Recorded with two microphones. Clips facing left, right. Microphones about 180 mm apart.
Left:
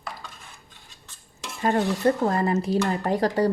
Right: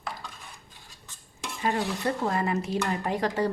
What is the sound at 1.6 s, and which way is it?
A woman's voice, 45° left (ahead or behind).